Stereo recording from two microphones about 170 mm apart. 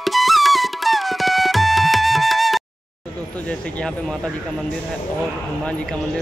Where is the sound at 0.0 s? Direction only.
Centre (ahead or behind).